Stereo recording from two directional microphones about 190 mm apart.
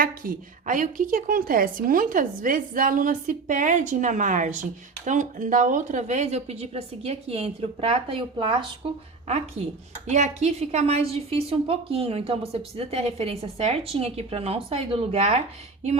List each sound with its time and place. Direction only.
0.0 s a woman's voice: 45° right (ahead or behind); by 8.5 s 30° right (ahead or behind)
10.1 s a woman's voice: 35° right (ahead or behind)